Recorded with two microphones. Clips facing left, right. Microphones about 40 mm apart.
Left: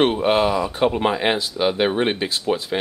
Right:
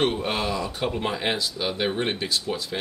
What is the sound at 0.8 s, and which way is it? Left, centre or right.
Speech, left.